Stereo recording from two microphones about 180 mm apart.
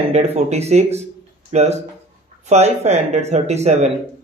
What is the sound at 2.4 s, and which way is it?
Speech, 40° right (ahead or behind).